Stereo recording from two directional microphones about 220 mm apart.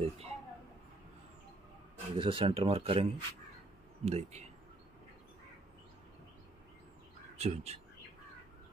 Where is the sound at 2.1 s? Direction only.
25° right (ahead or behind).